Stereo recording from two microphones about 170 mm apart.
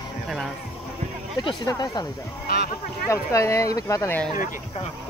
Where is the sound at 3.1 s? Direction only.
20° left (ahead or behind).